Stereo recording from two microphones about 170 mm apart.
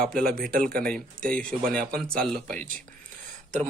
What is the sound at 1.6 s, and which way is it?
Speech, 60° right (ahead or behind).